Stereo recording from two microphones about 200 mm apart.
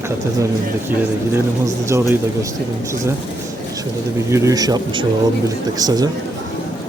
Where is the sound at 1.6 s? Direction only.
15° right (ahead or behind).